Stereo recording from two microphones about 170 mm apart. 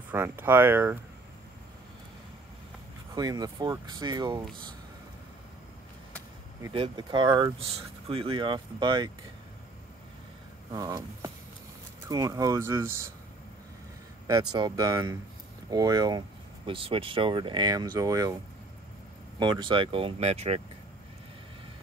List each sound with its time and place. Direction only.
0.1 s speech: 15° right (ahead or behind)
3.2 s speech: 20° right (ahead or behind)
6.7 s speech: 30° right (ahead or behind)
10.7 s speech: 20° right (ahead or behind)
14.5 s speech: 20° right (ahead or behind)
19.4 s speech: 30° right (ahead or behind)